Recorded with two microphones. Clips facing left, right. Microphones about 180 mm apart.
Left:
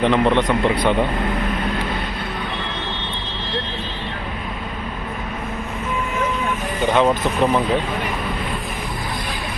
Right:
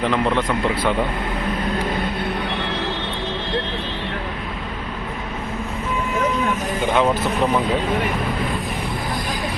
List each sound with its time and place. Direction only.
0.0 s a man's voice: 25° left (ahead or behind)
0.3 s speech: 5° right (ahead or behind)
6.9 s speech: centre (ahead or behind)